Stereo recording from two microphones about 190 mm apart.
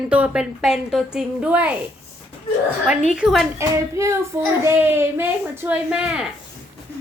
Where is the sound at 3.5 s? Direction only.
15° right (ahead or behind).